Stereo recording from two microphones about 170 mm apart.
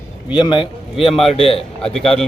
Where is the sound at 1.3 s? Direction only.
35° left (ahead or behind).